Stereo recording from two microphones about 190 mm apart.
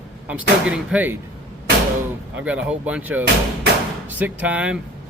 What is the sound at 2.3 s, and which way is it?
Speech, 5° right (ahead or behind).